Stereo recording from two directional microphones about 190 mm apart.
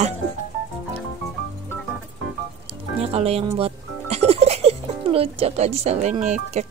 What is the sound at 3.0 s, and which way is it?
A woman's voice, 30° right (ahead or behind).